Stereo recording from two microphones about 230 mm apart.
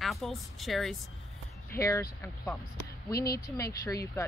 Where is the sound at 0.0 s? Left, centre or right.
Centre.